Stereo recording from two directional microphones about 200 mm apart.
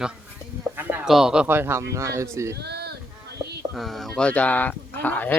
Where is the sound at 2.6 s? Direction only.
55° right (ahead or behind).